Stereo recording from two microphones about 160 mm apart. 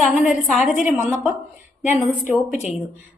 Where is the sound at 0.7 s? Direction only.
50° left (ahead or behind).